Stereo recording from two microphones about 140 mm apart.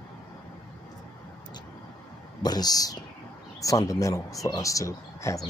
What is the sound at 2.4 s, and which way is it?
Speech, 30° left (ahead or behind).